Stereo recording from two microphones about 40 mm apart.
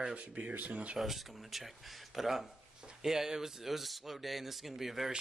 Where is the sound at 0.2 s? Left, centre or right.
Right.